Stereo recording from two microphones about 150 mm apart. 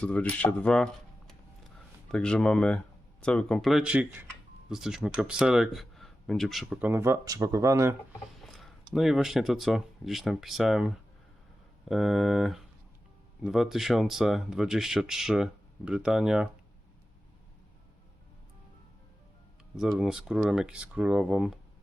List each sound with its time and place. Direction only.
0.0 s speech: 10° left (ahead or behind)
2.0 s speech: 5° left (ahead or behind)
6.8 s speech: 15° right (ahead or behind)
8.4 s a sound: centre (ahead or behind)
8.9 s speech: centre (ahead or behind)
19.7 s speech: 5° right (ahead or behind)